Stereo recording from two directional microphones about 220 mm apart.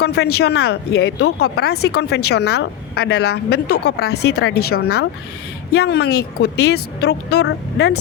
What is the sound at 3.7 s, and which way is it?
Speech, 90° left.